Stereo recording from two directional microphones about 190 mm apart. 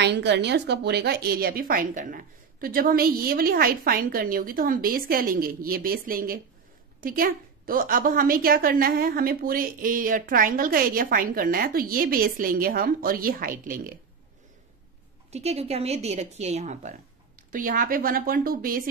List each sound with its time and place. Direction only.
0.0 s a woman's voice: 65° right (ahead or behind); by 13.9 s 50° right (ahead or behind)
15.3 s a woman's voice: 35° right (ahead or behind); by 18.9 s 50° right (ahead or behind)